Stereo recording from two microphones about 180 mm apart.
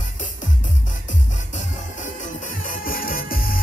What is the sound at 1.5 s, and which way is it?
Music, 45° left (ahead or behind).